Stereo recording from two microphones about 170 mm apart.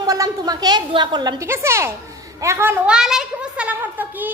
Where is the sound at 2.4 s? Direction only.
15° right (ahead or behind).